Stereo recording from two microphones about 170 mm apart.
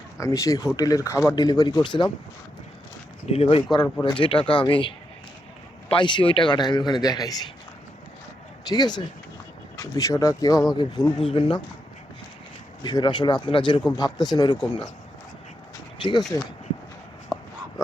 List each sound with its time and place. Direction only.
0.2 s speech: 20° left (ahead or behind)
3.2 s speech: 35° left (ahead or behind)
3.8 s speech: 10° left (ahead or behind)
4.2 s speech: 30° left (ahead or behind)
5.9 s speech: 25° left (ahead or behind)
8.7 s speech: 25° left (ahead or behind)
12.8 s speech: 25° left (ahead or behind)